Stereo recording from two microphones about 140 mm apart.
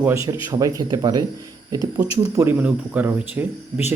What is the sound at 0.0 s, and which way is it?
A man's voice, 20° right (ahead or behind).